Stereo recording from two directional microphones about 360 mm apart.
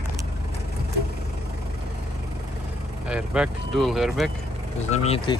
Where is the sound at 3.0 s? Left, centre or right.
Centre.